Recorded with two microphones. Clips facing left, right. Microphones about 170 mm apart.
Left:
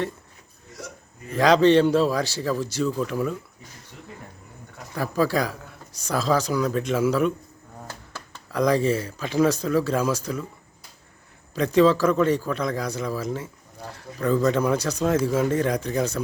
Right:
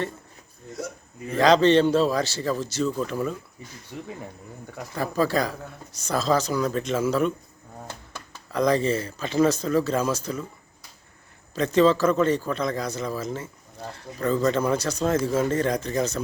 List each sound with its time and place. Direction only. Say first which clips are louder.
1.4 s speech: left 1 dB; 10° left (ahead or behind)
3.9 s speech: right 10 dB; 55° right (ahead or behind)
4.9 s speech: left 1 dB; 10° left (ahead or behind)
8.5 s speech: left 1 dB; 10° left (ahead or behind)
11.5 s speech: left 1 dB; 10° left (ahead or behind)